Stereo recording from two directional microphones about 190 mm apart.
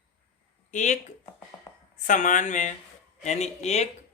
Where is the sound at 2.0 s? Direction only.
40° left (ahead or behind).